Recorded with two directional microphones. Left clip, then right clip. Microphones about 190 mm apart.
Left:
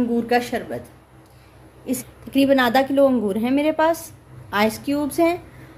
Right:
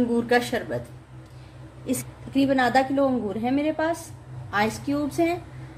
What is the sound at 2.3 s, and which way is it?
A woman's voice, 30° left (ahead or behind).